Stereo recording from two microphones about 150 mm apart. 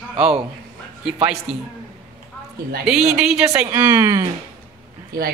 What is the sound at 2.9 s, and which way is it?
Speech, 5° right (ahead or behind).